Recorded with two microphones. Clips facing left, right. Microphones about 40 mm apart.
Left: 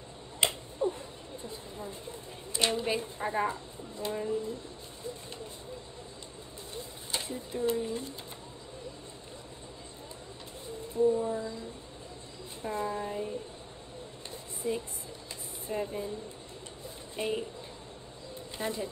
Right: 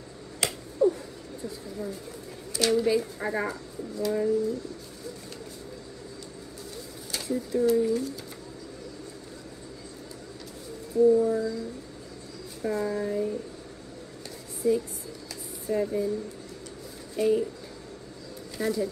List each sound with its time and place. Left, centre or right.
0.4 s finger snapping: left
1.4 s a woman's voice: left
7.1 s speech: left
10.9 s a woman's voice: left
12.6 s a woman's voice: left
14.6 s a woman's voice: left
17.2 s speech: left
18.6 s a woman's voice: left